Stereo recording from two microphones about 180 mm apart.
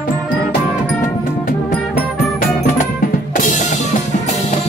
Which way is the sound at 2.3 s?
50° left (ahead or behind).